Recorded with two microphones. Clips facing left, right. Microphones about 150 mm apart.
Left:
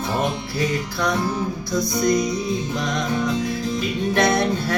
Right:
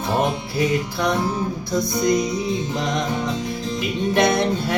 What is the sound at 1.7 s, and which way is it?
Music, 25° right (ahead or behind).